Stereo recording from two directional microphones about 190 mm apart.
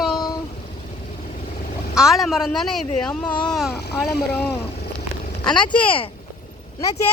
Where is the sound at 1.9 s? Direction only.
Centre (ahead or behind).